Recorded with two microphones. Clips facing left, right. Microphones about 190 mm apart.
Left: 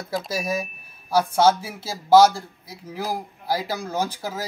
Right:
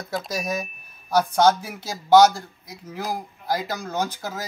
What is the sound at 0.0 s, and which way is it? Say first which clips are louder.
Speech: left 1 dB; centre (ahead or behind).